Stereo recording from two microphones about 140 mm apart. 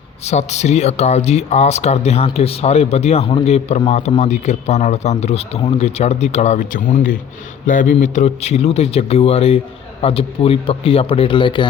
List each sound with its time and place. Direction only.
0.3 s a man's voice: 50° left (ahead or behind); by 11.7 s 35° left (ahead or behind)